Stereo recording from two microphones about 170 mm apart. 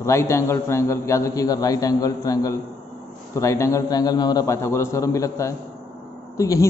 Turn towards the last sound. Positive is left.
turn(degrees=20)  # may be behind; listen again after turning